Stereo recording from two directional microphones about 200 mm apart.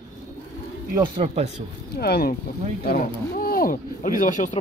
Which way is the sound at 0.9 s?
25° right (ahead or behind).